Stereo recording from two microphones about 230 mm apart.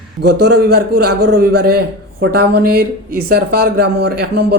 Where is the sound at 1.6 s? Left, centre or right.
Right.